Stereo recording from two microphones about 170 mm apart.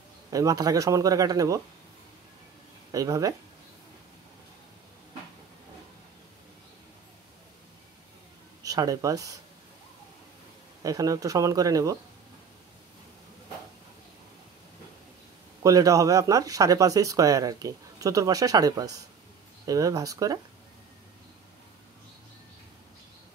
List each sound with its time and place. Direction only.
0.3 s speech: 20° right (ahead or behind)
2.9 s speech: 20° right (ahead or behind)
8.6 s speech: 20° right (ahead or behind)
10.8 s speech: 20° right (ahead or behind)
15.6 s speech: 20° right (ahead or behind)